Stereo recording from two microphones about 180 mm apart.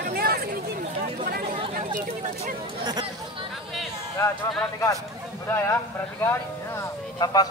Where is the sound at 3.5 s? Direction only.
Centre (ahead or behind).